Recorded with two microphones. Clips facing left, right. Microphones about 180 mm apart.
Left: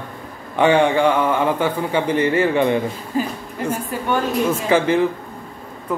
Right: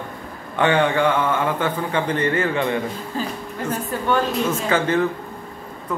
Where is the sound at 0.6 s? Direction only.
15° left (ahead or behind).